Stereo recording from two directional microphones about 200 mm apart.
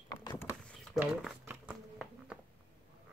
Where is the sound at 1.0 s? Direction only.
Centre (ahead or behind).